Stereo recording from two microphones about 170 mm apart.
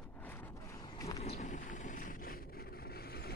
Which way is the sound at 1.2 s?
40° left (ahead or behind).